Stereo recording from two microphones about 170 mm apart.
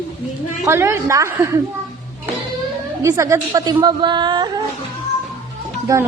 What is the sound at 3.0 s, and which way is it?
Speech, 20° right (ahead or behind).